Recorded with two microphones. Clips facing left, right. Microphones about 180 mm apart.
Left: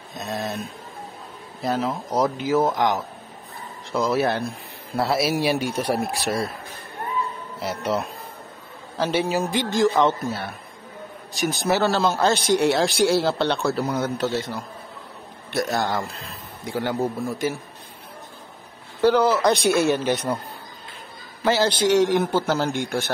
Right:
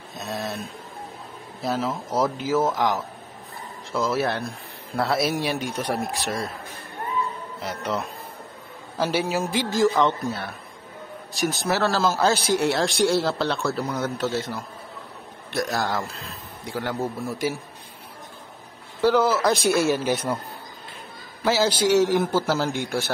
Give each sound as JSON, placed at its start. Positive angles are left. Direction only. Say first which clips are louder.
{"t": 0.1, "sound": "speech", "louder": "left 2 dB", "side_deg": 0}
{"t": 1.6, "sound": "a man's voice", "louder": "left 2 dB", "side_deg": 0}
{"t": 1.9, "sound": "speech", "louder": "left 1 dB", "side_deg": 15}
{"t": 2.2, "sound": "a man's voice", "louder": "left 2 dB", "side_deg": 0}
{"t": 4.1, "sound": "a man's voice", "louder": "left 3 dB", "side_deg": 0}
{"t": 5.9, "sound": "speech", "louder": "left 3 dB", "side_deg": 35}
{"t": 7.7, "sound": "speech", "louder": "left 3 dB", "side_deg": 35}
{"t": 8.9, "sound": "a man's voice", "louder": "left 1 dB", "side_deg": -5}
{"t": 19.0, "sound": "a man's voice", "louder": "left 2 dB", "side_deg": -5}
{"t": 21.5, "sound": "a man's voice", "louder": "left 1 dB", "side_deg": -5}